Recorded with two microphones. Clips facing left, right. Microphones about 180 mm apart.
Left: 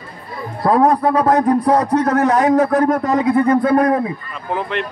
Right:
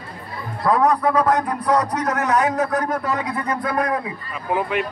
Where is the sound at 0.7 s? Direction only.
30° left (ahead or behind).